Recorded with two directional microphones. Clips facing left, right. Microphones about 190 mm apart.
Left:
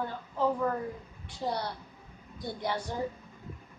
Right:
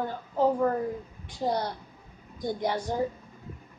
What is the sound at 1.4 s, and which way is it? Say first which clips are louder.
A woman's voice: right 5 dB; 45° right (ahead or behind).